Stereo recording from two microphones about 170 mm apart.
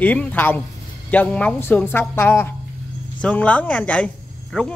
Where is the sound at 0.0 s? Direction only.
10° left (ahead or behind).